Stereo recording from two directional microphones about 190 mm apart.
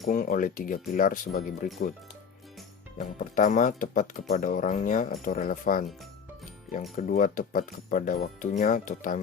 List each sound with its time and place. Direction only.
0.1 s speech: 45° left (ahead or behind)
3.0 s speech: 40° left (ahead or behind)
6.9 s speech: 45° left (ahead or behind)